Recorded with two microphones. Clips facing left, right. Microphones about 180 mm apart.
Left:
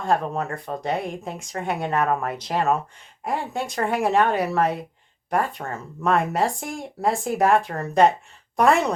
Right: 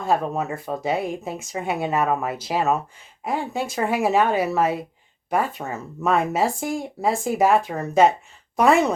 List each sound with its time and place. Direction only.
0.0 s speech: 5° right (ahead or behind)